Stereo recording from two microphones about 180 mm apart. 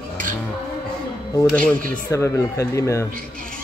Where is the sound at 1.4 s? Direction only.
10° left (ahead or behind).